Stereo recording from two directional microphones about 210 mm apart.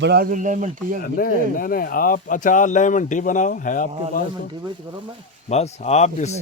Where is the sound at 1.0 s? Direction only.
45° left (ahead or behind).